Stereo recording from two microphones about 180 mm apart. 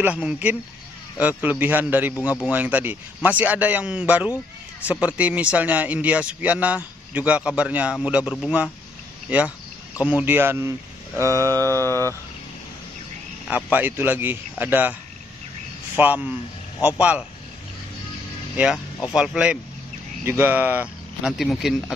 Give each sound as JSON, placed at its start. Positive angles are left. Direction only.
{"t": 0.0, "sound": "a man's voice", "side_deg": -5}
{"t": 13.5, "sound": "a man's voice", "side_deg": -10}
{"t": 16.0, "sound": "a man's voice", "side_deg": -10}
{"t": 19.1, "sound": "speech", "side_deg": -5}